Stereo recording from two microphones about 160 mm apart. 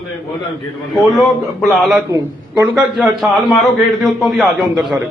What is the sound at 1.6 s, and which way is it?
A man's voice, centre (ahead or behind).